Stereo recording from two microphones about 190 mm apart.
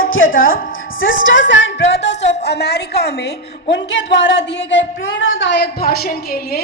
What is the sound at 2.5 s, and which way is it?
A woman's voice, 60° left (ahead or behind).